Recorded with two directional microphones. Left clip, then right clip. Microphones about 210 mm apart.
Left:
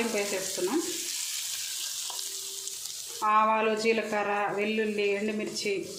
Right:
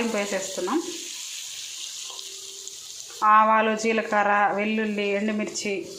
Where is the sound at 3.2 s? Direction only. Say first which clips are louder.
Right 6 dB; 5° right (ahead or behind).